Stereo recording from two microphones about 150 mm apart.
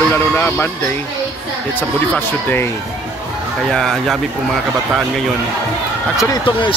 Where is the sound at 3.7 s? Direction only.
Centre (ahead or behind).